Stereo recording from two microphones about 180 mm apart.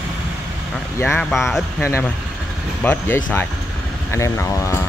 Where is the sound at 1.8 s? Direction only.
15° left (ahead or behind).